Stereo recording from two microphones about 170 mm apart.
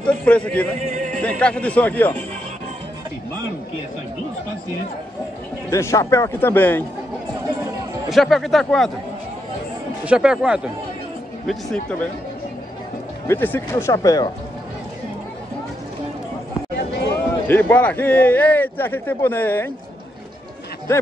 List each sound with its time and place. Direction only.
0.0 s a man's voice: 5° left (ahead or behind)
0.7 s music: 40° right (ahead or behind)
1.4 s a man's voice: 5° left (ahead or behind)
5.7 s a man's voice: 15° left (ahead or behind)
8.1 s speech: centre (ahead or behind)
10.0 s speech: 5° right (ahead or behind)
11.4 s speech: 5° left (ahead or behind)
13.3 s a man's voice: 10° left (ahead or behind)
17.5 s a man's voice: 10° left (ahead or behind)